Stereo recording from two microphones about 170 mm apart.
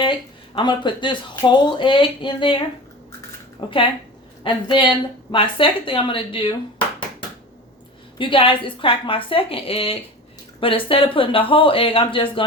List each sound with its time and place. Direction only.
0.0 s speech: 30° left (ahead or behind)
3.6 s speech: 30° left (ahead or behind)
8.2 s speech: 30° left (ahead or behind)